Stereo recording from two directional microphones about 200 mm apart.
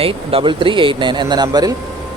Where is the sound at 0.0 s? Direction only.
30° right (ahead or behind).